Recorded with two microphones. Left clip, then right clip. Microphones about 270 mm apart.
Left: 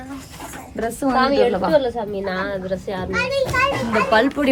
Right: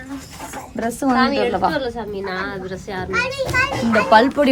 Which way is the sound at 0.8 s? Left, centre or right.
Centre.